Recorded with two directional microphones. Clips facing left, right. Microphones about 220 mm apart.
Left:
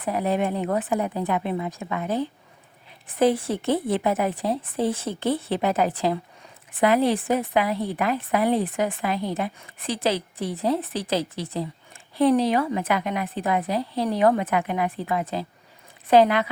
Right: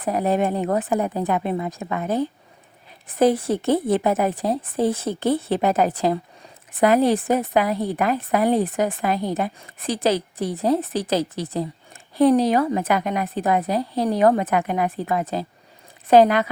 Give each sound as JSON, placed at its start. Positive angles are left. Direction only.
{"t": 0.0, "sound": "speech", "side_deg": -40}